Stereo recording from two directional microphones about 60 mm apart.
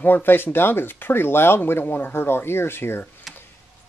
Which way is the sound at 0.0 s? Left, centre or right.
Left.